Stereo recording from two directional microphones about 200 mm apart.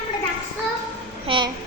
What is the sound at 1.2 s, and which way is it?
Speech, 25° right (ahead or behind).